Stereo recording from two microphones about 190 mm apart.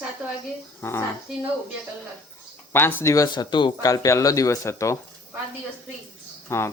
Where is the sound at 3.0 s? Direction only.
15° left (ahead or behind).